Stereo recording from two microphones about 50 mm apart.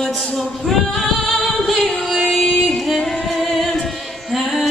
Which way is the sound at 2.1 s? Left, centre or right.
Centre.